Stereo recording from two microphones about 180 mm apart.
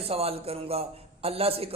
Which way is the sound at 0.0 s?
35° right (ahead or behind).